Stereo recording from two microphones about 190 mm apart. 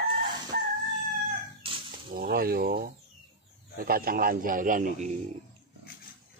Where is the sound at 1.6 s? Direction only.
25° right (ahead or behind).